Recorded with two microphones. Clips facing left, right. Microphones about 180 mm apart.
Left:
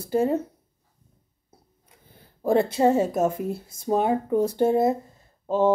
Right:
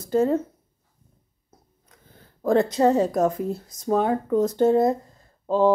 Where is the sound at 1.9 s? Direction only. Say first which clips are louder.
Right 1 dB; 15° left (ahead or behind).